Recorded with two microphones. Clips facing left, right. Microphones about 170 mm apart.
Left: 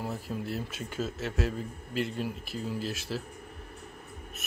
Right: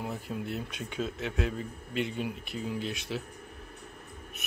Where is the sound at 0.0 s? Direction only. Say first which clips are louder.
Left 1 dB; centre (ahead or behind).